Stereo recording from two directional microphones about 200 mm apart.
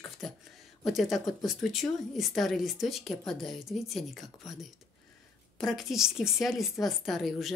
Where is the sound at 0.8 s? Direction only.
Centre (ahead or behind).